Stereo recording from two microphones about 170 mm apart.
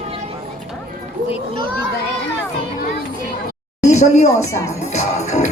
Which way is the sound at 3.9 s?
40° left (ahead or behind).